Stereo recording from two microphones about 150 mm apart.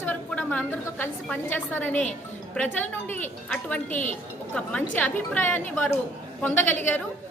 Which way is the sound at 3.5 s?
10° left (ahead or behind).